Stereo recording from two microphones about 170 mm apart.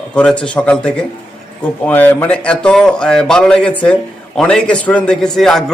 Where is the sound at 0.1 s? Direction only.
5° left (ahead or behind).